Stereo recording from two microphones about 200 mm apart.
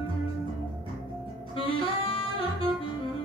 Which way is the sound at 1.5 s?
25° left (ahead or behind).